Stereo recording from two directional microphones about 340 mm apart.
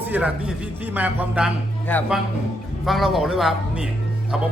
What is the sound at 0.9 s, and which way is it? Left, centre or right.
Speech, centre.